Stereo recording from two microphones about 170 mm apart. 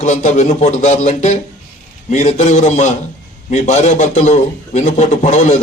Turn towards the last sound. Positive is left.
turn(degrees=45)  # may be behind; listen again after turning